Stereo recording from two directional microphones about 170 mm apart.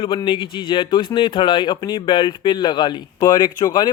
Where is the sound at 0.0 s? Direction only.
30° left (ahead or behind).